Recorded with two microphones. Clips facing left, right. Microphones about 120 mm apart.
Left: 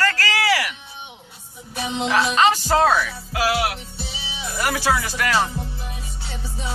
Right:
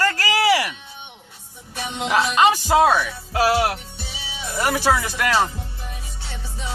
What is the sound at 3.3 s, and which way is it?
Music, 35° right (ahead or behind).